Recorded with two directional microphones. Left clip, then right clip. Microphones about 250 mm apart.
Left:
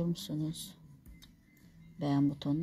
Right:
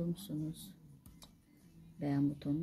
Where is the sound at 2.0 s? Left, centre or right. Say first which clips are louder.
Left 4 dB; centre.